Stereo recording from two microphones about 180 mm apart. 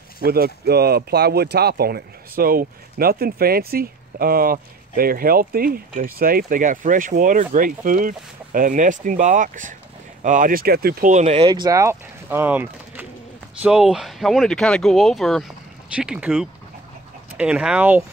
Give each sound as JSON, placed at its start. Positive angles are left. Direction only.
{"t": 0.2, "sound": "speech", "side_deg": -60}